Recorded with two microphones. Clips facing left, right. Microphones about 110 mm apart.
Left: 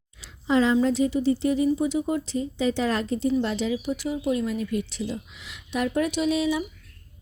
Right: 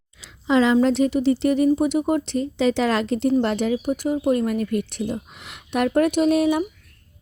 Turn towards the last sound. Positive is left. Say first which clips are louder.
# right 6 dB
turn(degrees=-55)  # may be behind; listen again after turning